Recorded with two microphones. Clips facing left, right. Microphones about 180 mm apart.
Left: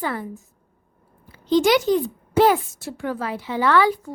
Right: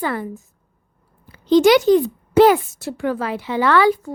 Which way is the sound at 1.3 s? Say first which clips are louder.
Right 5 dB; 80° right.